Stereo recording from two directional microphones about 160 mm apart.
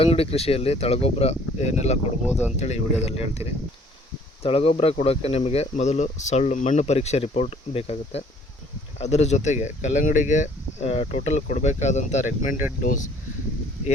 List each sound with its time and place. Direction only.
0.0 s speech: 40° left (ahead or behind)
4.4 s speech: 35° left (ahead or behind)